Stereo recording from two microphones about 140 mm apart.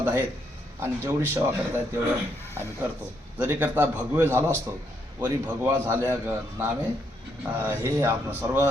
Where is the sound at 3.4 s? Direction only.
10° right (ahead or behind).